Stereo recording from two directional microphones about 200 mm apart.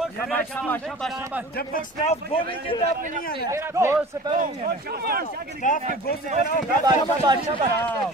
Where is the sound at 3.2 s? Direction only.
50° left (ahead or behind).